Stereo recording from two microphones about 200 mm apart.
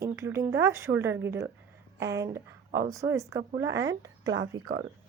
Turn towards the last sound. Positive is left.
turn(degrees=-20)  # may be behind; listen again after turning